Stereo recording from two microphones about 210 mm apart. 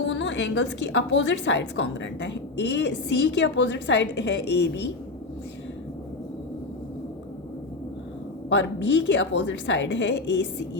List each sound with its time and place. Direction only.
0.1 s a woman's voice: 60° left (ahead or behind)
8.4 s a woman's voice: 55° left (ahead or behind)